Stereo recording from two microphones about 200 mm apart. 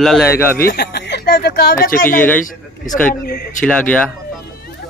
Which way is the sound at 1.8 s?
45° left (ahead or behind).